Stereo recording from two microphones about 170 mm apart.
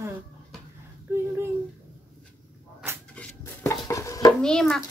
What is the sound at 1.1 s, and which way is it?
Speech, 15° right (ahead or behind).